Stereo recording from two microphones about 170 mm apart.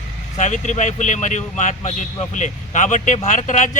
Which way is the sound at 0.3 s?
45° left (ahead or behind).